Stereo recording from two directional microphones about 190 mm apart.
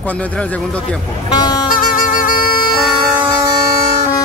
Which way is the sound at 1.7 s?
45° left (ahead or behind).